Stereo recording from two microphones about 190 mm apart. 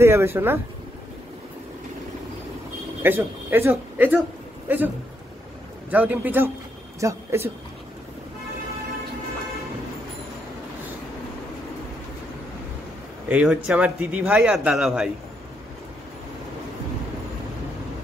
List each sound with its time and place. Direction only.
0.0 s a man's voice: 15° right (ahead or behind)
3.0 s a man's voice: 10° right (ahead or behind)
13.3 s a man's voice: 5° right (ahead or behind)